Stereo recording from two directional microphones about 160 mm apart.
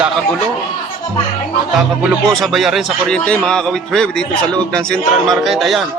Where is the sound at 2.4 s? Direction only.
Centre (ahead or behind).